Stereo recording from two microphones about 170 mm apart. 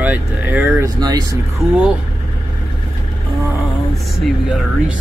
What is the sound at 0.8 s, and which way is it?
Speech, 20° right (ahead or behind).